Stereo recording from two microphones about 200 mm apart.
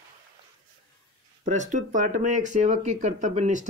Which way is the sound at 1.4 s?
35° right (ahead or behind).